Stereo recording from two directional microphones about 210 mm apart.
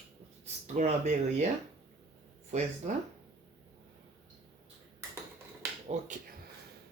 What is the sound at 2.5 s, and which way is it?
Speech, 30° right (ahead or behind).